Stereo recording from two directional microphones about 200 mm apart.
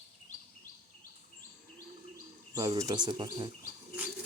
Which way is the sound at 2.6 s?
20° right (ahead or behind).